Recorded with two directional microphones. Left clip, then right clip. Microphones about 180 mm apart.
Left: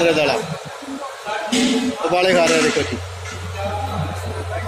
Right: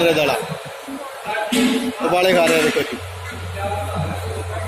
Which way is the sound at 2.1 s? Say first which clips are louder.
Even; centre (ahead or behind).